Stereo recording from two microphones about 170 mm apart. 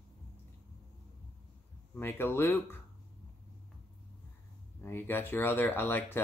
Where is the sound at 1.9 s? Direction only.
15° left (ahead or behind).